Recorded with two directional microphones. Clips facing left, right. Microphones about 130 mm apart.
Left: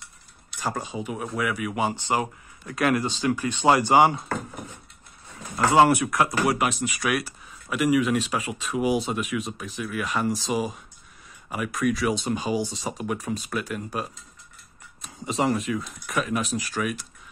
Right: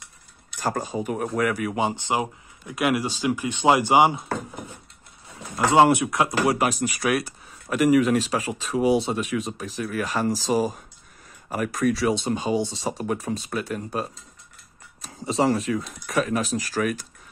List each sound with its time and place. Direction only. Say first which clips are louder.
0.6 s speech: right 3 dB; 45° right (ahead or behind)
1.8 s speech: left 1 dB; 20° right (ahead or behind)
5.6 s speech: right 1 dB; 20° right (ahead or behind)
6.6 s speech: right 2 dB; 40° right (ahead or behind)